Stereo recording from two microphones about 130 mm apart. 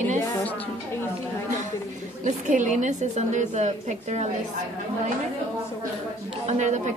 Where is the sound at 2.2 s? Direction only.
75° right (ahead or behind).